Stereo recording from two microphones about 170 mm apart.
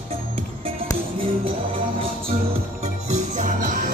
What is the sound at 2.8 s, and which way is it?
Music, 45° right (ahead or behind).